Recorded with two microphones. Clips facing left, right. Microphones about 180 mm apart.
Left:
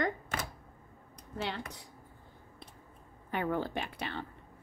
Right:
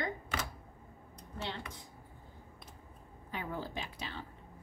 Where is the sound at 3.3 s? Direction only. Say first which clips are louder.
Left 7 dB; 65° left (ahead or behind).